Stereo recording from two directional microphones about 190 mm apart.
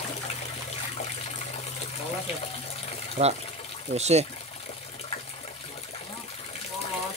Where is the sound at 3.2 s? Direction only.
40° right (ahead or behind).